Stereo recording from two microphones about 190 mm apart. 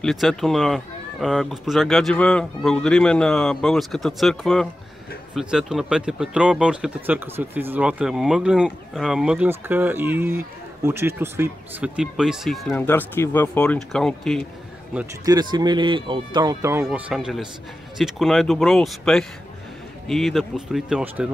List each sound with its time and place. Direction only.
0.0 s speech: centre (ahead or behind)
12.8 s speech: 10° left (ahead or behind)
15.2 s speech: 20° right (ahead or behind)
16.8 s speech: 5° right (ahead or behind)